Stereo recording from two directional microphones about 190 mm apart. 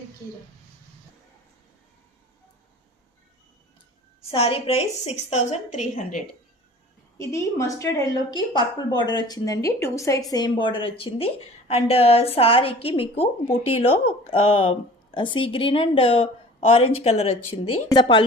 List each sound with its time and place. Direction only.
4.3 s a woman's voice: 30° left (ahead or behind)
7.2 s a woman's voice: 15° left (ahead or behind)